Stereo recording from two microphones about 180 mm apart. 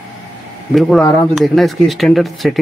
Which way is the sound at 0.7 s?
Centre (ahead or behind).